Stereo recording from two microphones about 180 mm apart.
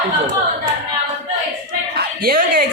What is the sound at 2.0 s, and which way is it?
Speech, 55° right (ahead or behind).